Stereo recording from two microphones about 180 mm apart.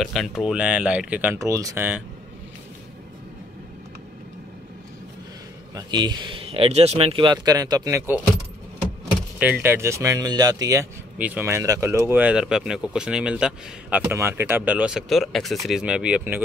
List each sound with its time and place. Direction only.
0.0 s speech: centre (ahead or behind)
5.8 s a man's voice: 25° right (ahead or behind)
9.4 s speech: 10° right (ahead or behind)
11.1 s speech: 10° right (ahead or behind)